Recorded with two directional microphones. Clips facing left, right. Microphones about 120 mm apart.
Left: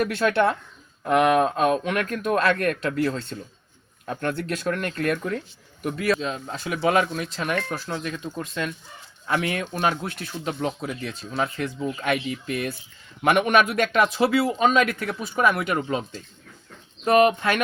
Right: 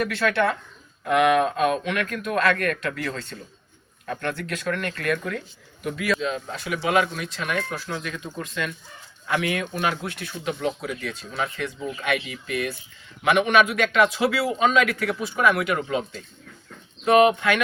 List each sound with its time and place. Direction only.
0.0 s speech: 40° left (ahead or behind)
9.2 s speech: 35° left (ahead or behind)